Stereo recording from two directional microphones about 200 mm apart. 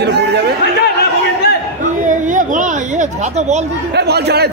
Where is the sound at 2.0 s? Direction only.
40° right (ahead or behind).